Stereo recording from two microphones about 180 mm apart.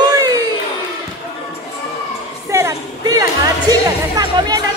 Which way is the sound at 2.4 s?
15° right (ahead or behind).